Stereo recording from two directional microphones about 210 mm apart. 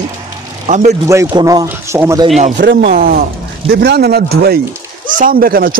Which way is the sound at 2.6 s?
60° right (ahead or behind).